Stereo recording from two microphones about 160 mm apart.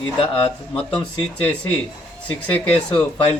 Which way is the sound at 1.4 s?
10° left (ahead or behind).